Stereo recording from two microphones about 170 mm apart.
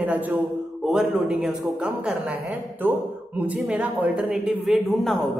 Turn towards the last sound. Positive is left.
turn(degrees=0)  # may be behind; listen again after turning